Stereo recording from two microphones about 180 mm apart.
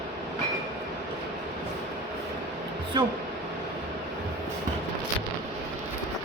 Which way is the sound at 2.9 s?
25° right (ahead or behind).